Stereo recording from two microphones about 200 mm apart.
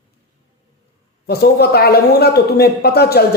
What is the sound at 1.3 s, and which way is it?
A man's voice, 50° left (ahead or behind).